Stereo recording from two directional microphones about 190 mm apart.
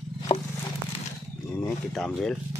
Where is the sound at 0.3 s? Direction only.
25° left (ahead or behind).